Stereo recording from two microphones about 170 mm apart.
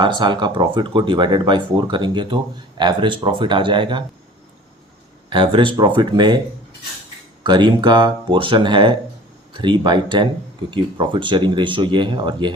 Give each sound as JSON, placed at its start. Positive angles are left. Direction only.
{"t": 0.0, "sound": "speech", "side_deg": -25}
{"t": 5.3, "sound": "speech", "side_deg": -30}
{"t": 7.4, "sound": "speech", "side_deg": -25}